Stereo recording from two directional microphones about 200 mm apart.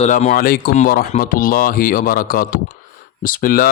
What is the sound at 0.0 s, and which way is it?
Speech, 35° left (ahead or behind).